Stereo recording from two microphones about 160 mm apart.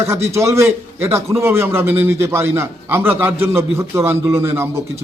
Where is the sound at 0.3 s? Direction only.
15° right (ahead or behind).